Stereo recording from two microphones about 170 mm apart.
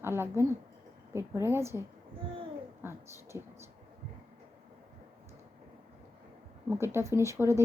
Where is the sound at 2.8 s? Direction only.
15° right (ahead or behind).